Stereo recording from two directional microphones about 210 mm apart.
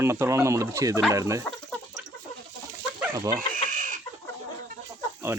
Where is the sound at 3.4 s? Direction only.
40° right (ahead or behind).